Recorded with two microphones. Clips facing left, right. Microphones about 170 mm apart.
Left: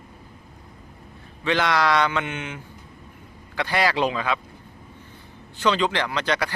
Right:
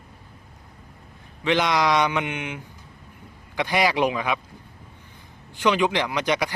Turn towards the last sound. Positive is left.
turn(degrees=-15)  # may be behind; listen again after turning